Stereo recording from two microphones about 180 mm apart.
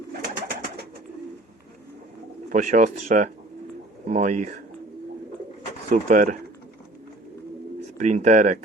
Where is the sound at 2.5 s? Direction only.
45° right (ahead or behind).